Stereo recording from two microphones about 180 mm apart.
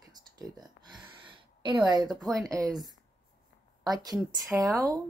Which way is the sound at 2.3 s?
5° left (ahead or behind).